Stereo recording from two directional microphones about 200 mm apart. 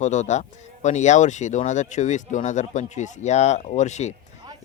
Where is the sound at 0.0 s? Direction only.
35° left (ahead or behind).